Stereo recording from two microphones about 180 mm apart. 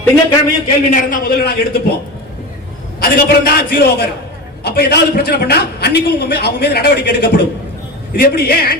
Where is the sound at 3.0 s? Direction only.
55° left (ahead or behind).